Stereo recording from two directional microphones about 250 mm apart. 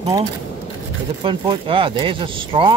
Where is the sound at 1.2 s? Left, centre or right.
Right.